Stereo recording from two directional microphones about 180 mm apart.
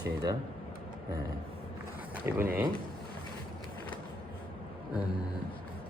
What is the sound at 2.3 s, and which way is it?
Speech, 10° right (ahead or behind).